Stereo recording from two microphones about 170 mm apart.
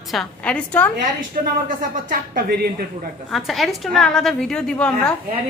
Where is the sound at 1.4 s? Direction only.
55° right (ahead or behind).